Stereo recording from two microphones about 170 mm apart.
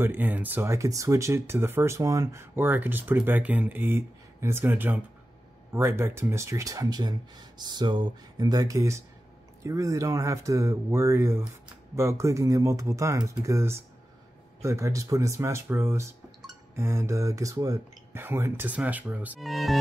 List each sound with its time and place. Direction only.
0.0 s speech: 10° right (ahead or behind)